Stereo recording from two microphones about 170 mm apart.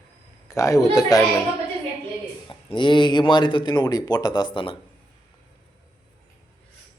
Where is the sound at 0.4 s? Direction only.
20° left (ahead or behind).